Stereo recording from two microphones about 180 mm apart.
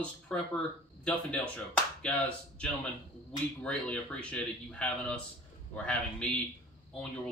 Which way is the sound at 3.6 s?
5° left (ahead or behind).